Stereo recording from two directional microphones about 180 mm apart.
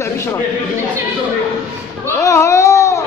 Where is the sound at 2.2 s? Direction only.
15° left (ahead or behind).